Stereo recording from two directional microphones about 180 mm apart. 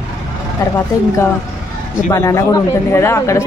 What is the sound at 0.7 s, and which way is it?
Speech, 15° left (ahead or behind).